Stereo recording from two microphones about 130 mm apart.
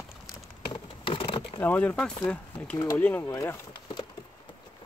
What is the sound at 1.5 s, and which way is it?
Speech, 15° left (ahead or behind).